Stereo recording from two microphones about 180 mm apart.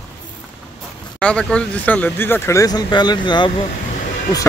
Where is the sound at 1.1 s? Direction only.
5° left (ahead or behind).